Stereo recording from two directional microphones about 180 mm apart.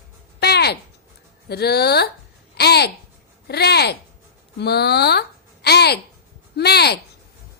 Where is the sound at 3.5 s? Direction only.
65° left (ahead or behind).